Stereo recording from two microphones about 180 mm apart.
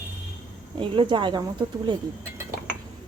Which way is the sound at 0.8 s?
25° right (ahead or behind).